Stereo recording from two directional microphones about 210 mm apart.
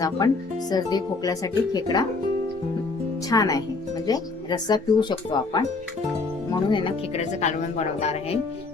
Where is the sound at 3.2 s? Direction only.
15° left (ahead or behind).